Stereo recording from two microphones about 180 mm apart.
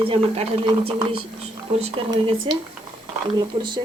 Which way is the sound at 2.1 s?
30° right (ahead or behind).